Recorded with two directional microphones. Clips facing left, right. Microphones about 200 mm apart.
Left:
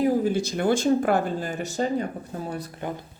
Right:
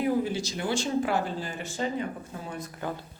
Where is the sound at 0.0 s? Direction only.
40° left (ahead or behind).